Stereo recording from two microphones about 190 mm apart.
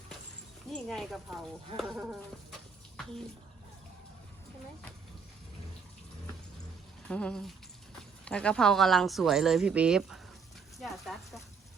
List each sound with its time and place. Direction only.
0.7 s speech: centre (ahead or behind)
7.1 s speech: 5° left (ahead or behind)